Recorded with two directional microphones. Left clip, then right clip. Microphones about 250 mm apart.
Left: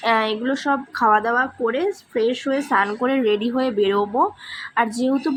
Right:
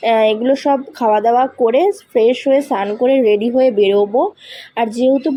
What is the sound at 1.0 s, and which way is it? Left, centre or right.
Speech, left.